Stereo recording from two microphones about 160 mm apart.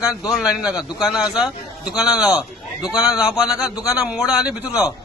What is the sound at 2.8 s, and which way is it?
A man's voice, 25° left (ahead or behind).